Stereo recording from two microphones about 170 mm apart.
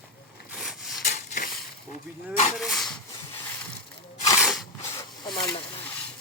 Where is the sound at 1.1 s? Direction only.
50° left (ahead or behind).